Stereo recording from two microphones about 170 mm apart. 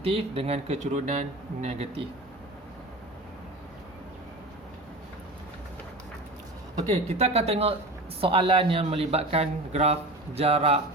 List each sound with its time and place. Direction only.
0.0 s a man's voice: 35° right (ahead or behind)
6.8 s a man's voice: 40° right (ahead or behind)